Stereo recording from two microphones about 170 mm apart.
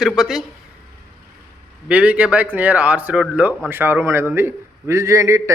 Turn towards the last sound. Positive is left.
turn(degrees=-15)  # may be behind; listen again after turning